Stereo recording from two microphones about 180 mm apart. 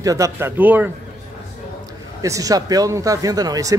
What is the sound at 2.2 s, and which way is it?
Speech, 20° right (ahead or behind).